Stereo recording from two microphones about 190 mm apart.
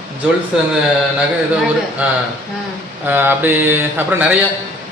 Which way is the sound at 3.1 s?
10° right (ahead or behind).